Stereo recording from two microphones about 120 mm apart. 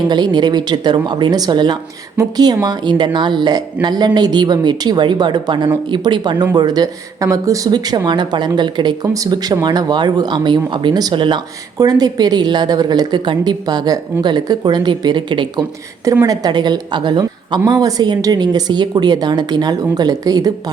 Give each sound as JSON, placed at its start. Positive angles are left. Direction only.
{"t": 0.1, "sound": "speech", "side_deg": -40}